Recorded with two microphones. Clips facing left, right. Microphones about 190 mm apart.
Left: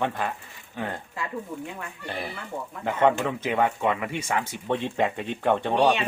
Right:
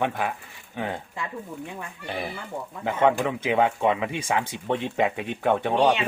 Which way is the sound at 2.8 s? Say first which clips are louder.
Even; 15° right (ahead or behind).